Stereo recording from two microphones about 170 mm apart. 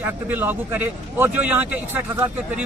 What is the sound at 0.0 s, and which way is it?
Speech, 10° right (ahead or behind).